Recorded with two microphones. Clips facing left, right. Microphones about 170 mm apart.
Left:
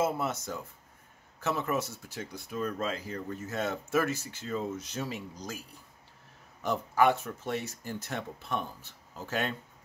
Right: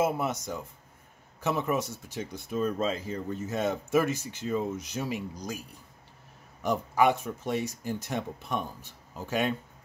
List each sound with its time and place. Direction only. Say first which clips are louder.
0.0 s speech: right 2 dB; 15° right (ahead or behind)
6.6 s speech: right 1 dB; 15° right (ahead or behind)